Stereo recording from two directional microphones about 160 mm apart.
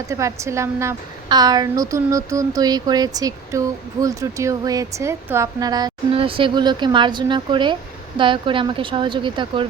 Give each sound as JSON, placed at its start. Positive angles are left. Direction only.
{"t": 0.1, "sound": "a woman's voice", "side_deg": -20}
{"t": 6.1, "sound": "a woman's voice", "side_deg": -35}